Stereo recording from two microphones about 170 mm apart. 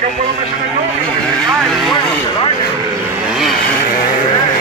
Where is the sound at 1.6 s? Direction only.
Centre (ahead or behind).